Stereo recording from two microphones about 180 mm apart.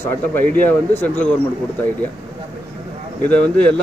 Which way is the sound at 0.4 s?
10° left (ahead or behind).